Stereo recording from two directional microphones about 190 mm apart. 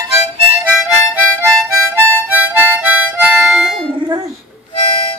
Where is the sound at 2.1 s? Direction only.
10° right (ahead or behind).